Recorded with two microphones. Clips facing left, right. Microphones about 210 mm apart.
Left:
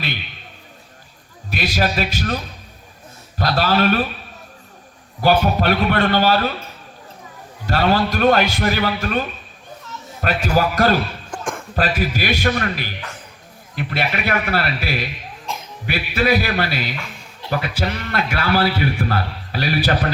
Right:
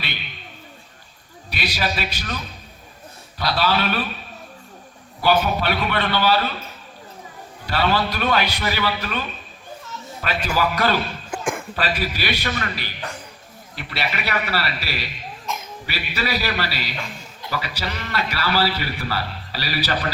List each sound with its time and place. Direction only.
1.5 s a man's voice: 45° left (ahead or behind)
5.2 s a man's voice: 45° left (ahead or behind)
7.7 s a man's voice: 45° left (ahead or behind)
11.3 s a sound: 5° right (ahead or behind)
11.8 s a man's voice: 45° left (ahead or behind)
15.5 s a sound: 30° left (ahead or behind)
15.9 s a man's voice: 55° left (ahead or behind)